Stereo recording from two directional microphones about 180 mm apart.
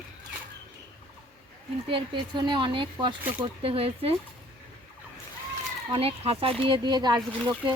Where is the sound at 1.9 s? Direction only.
25° right (ahead or behind).